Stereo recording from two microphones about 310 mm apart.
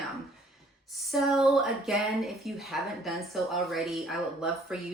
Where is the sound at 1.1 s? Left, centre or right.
Centre.